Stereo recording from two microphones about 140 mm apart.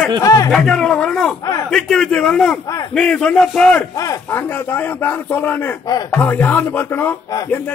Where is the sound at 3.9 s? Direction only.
25° left (ahead or behind).